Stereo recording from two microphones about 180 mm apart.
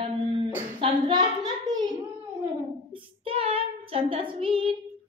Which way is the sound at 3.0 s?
30° right (ahead or behind).